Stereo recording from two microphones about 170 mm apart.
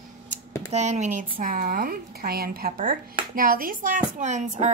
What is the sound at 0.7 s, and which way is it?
Speech, 45° right (ahead or behind).